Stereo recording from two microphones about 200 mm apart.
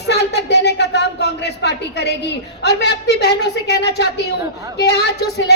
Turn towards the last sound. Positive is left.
turn(degrees=55)  # may be behind; listen again after turning